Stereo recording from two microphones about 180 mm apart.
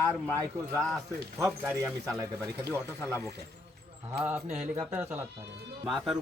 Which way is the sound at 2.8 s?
15° left (ahead or behind).